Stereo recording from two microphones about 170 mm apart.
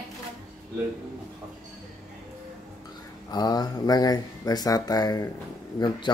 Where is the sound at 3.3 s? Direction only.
20° left (ahead or behind).